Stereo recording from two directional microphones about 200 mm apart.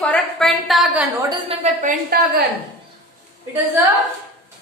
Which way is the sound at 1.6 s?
40° right (ahead or behind).